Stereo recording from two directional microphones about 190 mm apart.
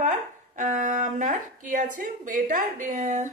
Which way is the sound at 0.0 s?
40° right (ahead or behind).